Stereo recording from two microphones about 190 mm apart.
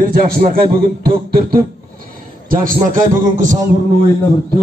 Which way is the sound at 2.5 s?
45° right (ahead or behind).